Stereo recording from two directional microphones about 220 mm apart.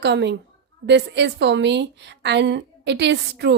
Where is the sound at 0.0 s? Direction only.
50° right (ahead or behind).